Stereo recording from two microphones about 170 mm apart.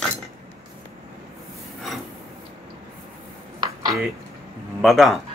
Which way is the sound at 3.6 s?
25° right (ahead or behind).